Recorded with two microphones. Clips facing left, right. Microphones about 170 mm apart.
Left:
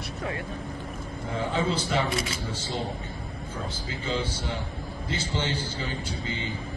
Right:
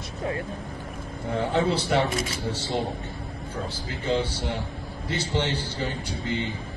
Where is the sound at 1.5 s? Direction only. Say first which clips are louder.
Right 4 dB; 65° right (ahead or behind).